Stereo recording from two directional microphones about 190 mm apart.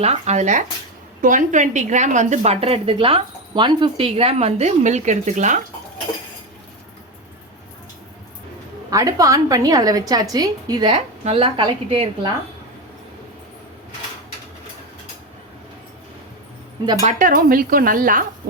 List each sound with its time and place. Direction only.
0.0 s a woman's voice: 35° right (ahead or behind)
8.9 s a woman's voice: 20° right (ahead or behind)
17.0 s speech: 40° right (ahead or behind)